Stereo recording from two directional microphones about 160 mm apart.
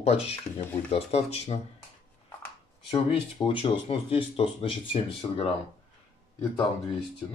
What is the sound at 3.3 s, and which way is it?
Speech, 30° left (ahead or behind).